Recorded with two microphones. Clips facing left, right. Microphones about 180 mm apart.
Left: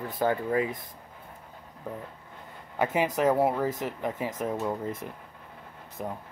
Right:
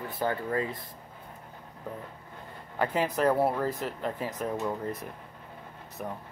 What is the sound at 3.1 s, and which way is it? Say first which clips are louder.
Speech: left 1 dB; 15° left (ahead or behind).